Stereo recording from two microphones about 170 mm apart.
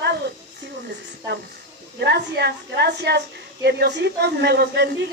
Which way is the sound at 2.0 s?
80° right.